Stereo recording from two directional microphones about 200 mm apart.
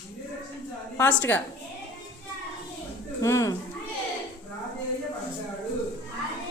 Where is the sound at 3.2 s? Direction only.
15° left (ahead or behind).